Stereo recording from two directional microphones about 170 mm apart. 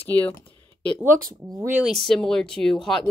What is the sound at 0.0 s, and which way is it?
Speech, 10° left (ahead or behind).